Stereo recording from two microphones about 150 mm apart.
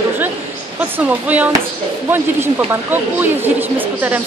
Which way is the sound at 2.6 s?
15° right (ahead or behind).